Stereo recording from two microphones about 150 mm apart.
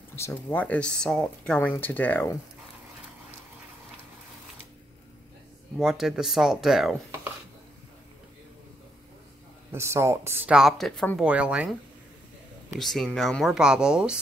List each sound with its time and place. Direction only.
0.1 s speech: 15° left (ahead or behind)
5.8 s speech: centre (ahead or behind)
9.7 s speech: 15° right (ahead or behind)
10.5 s speech: centre (ahead or behind)
11.2 s speech: 10° right (ahead or behind)
12.7 s speech: centre (ahead or behind)